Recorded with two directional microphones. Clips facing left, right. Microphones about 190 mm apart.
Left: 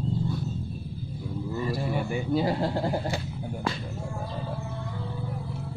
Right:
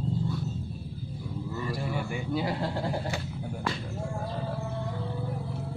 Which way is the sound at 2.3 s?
35° left (ahead or behind).